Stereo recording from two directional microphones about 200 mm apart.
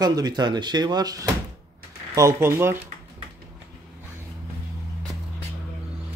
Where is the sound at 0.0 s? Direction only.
20° right (ahead or behind).